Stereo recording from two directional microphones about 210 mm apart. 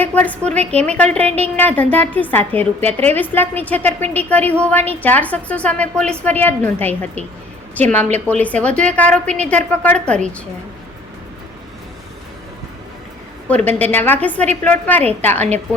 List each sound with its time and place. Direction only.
0.0 s a woman's voice: 10° left (ahead or behind)
13.5 s a woman's voice: 5° left (ahead or behind)